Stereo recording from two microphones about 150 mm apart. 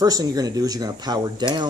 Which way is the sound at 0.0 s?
25° right (ahead or behind).